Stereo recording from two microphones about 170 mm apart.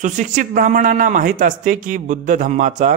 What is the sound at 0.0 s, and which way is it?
Speech, 45° right (ahead or behind).